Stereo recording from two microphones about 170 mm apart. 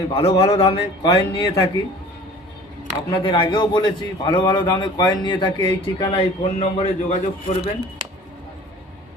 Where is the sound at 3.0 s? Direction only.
30° left (ahead or behind).